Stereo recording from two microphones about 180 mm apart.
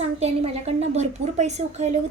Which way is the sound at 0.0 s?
35° right (ahead or behind).